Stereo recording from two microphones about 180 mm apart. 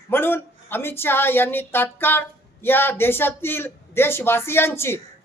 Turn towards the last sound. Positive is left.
turn(degrees=15)  # may be behind; listen again after turning